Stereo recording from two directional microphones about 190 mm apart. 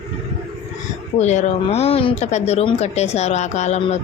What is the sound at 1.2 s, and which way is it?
Speech, 35° left (ahead or behind).